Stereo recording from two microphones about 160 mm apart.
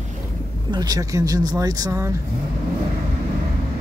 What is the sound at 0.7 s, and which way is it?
Speech, 25° right (ahead or behind).